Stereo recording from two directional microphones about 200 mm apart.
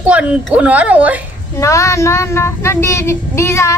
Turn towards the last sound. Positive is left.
turn(degrees=15)  # may be behind; listen again after turning